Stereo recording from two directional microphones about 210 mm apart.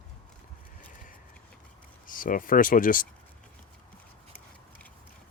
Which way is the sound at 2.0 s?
40° left (ahead or behind).